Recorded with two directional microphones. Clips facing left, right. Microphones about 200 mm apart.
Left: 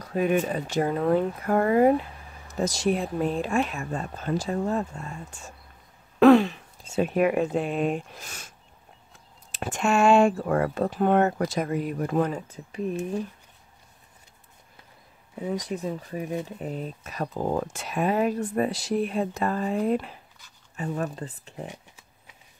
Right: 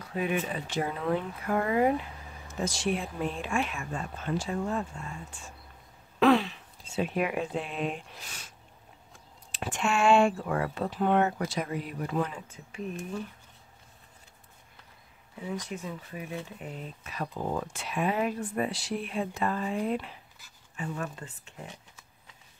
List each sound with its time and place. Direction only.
0.0 s speech: 40° left (ahead or behind)
9.5 s speech: 40° left (ahead or behind)
15.7 s speech: 40° left (ahead or behind)